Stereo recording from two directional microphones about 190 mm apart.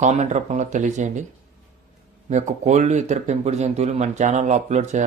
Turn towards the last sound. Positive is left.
turn(degrees=-40)  # may be behind; listen again after turning